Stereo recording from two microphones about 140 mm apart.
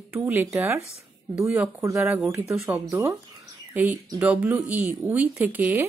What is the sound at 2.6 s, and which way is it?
Speech, 20° right (ahead or behind).